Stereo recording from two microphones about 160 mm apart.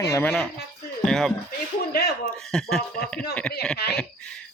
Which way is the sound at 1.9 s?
75° left (ahead or behind).